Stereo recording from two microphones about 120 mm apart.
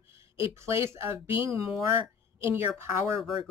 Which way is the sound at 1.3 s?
45° left (ahead or behind).